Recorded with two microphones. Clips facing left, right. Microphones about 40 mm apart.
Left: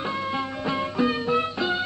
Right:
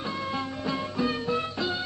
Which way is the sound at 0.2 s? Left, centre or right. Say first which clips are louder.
Left 3 dB; centre.